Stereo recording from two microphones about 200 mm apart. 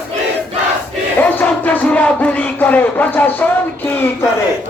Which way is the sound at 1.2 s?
10° left (ahead or behind).